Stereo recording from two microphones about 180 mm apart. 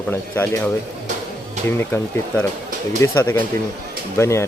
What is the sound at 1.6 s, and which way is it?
Speech, 10° left (ahead or behind).